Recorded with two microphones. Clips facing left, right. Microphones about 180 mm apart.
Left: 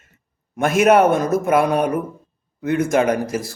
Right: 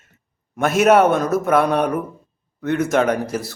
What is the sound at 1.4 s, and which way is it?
A man's voice, 5° left (ahead or behind).